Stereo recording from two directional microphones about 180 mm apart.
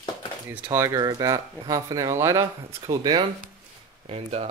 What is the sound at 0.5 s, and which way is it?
Speech, 15° right (ahead or behind).